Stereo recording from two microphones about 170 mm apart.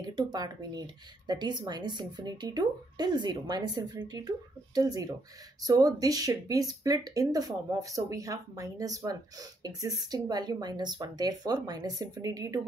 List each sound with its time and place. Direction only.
0.0 s speech: 25° right (ahead or behind)